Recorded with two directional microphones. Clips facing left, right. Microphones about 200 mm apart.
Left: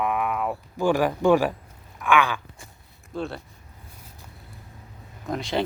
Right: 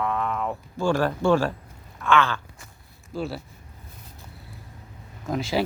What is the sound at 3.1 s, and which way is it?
Speech, centre (ahead or behind).